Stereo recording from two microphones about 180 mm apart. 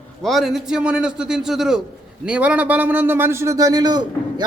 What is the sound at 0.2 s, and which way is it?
A man's voice, centre (ahead or behind).